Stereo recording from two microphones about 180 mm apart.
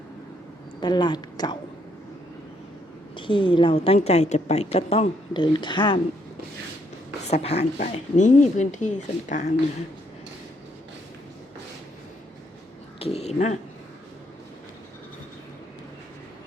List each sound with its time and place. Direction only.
0.8 s a woman's voice: 25° left (ahead or behind)
3.2 s a woman's voice: 30° left (ahead or behind)
7.3 s speech: 35° left (ahead or behind)
13.0 s speech: 35° left (ahead or behind)